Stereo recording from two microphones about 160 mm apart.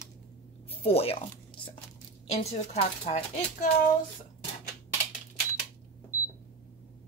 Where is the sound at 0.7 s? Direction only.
40° left (ahead or behind).